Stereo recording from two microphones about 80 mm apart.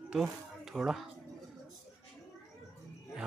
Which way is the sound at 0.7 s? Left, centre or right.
Centre.